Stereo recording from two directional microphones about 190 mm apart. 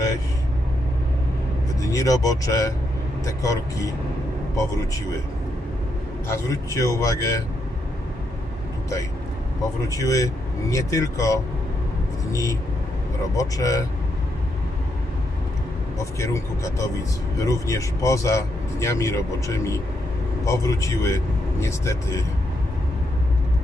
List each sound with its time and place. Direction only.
1.8 s speech: 15° left (ahead or behind)
6.2 s speech: 15° left (ahead or behind)
9.9 s speech: 15° left (ahead or behind)
16.1 s speech: 15° left (ahead or behind)